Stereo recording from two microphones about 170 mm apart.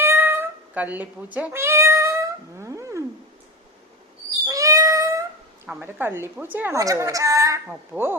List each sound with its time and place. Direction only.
0.0 s cat: 15° right (ahead or behind)
4.4 s cat: 20° right (ahead or behind)
5.6 s a woman's voice: 15° right (ahead or behind)